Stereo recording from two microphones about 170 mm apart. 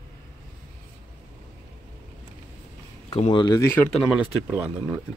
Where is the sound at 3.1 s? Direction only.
30° left (ahead or behind).